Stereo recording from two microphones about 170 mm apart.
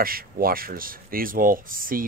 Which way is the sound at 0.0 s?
60° right (ahead or behind).